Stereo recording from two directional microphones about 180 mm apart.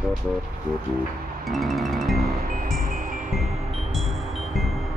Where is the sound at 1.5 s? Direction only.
Centre (ahead or behind).